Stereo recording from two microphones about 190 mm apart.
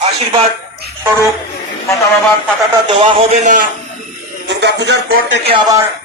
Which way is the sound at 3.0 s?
40° right (ahead or behind).